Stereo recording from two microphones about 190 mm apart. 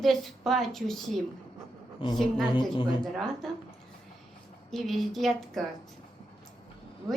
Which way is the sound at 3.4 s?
Centre (ahead or behind).